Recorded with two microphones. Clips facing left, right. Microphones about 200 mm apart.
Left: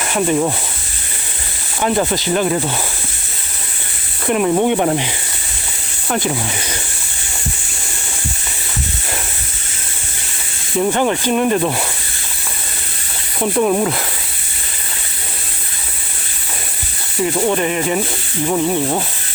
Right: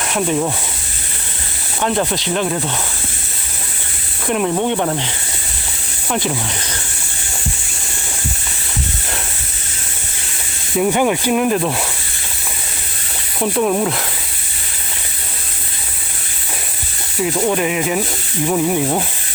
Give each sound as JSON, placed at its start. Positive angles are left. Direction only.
{"t": 0.0, "sound": "speech", "side_deg": 0}
{"t": 1.8, "sound": "speech", "side_deg": 5}
{"t": 4.3, "sound": "speech", "side_deg": 5}
{"t": 6.1, "sound": "speech", "side_deg": 5}
{"t": 10.8, "sound": "speech", "side_deg": -5}
{"t": 13.4, "sound": "speech", "side_deg": 0}
{"t": 17.2, "sound": "speech", "side_deg": 0}